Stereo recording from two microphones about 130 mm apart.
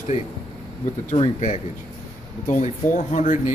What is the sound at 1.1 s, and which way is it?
Speech, 55° left (ahead or behind).